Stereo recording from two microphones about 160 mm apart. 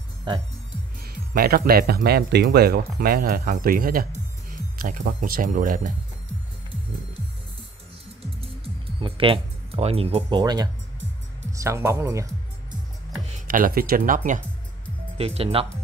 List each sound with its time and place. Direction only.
0.3 s speech: 25° right (ahead or behind)
1.0 s speech: 70° right (ahead or behind)
8.4 s music: 35° right (ahead or behind)
10.4 s speech: 25° right (ahead or behind)
13.5 s speech: 65° right (ahead or behind)
15.1 s speech: 40° right (ahead or behind)